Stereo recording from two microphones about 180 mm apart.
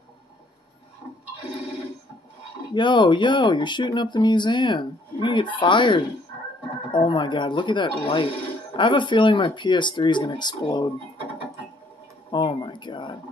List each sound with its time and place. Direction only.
2.7 s speech: 25° left (ahead or behind)
12.3 s speech: 25° left (ahead or behind)